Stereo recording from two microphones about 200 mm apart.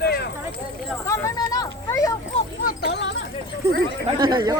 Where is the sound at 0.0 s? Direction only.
55° left (ahead or behind).